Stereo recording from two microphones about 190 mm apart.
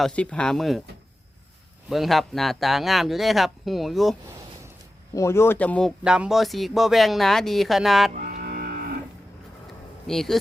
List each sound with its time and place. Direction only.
0.0 s speech: 5° left (ahead or behind)
1.9 s speech: centre (ahead or behind)
5.1 s speech: 15° left (ahead or behind)
6.1 s speech: 5° right (ahead or behind)
8.1 s music: 45° right (ahead or behind)
10.1 s speech: centre (ahead or behind)